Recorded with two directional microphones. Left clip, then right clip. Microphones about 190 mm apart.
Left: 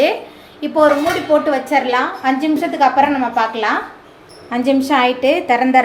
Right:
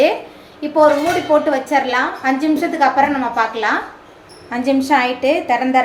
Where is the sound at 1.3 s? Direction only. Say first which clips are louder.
Left 1 dB; 5° left (ahead or behind).